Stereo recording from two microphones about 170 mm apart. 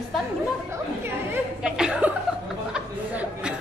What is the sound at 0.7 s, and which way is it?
Chuckle, 10° right (ahead or behind).